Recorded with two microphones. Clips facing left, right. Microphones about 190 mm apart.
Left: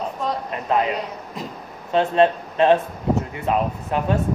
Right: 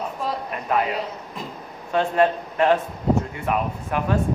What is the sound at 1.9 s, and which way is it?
Speech, 25° left (ahead or behind).